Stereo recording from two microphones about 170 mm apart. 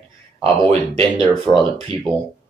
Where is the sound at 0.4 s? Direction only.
35° right (ahead or behind).